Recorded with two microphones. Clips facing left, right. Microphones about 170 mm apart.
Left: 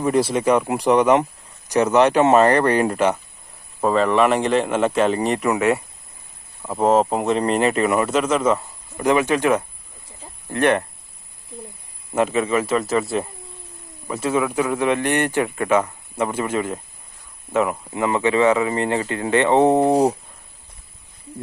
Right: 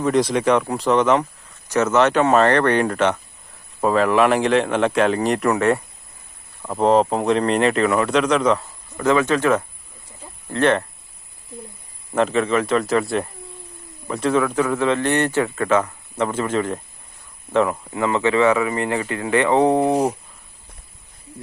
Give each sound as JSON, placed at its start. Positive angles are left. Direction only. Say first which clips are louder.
{"t": 0.0, "sound": "a man's voice", "louder": "even", "side_deg": 5}
{"t": 12.1, "sound": "a man's voice", "louder": "right 1 dB", "side_deg": 10}